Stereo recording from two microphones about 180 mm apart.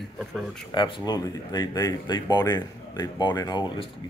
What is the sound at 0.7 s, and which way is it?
Speech, 25° left (ahead or behind).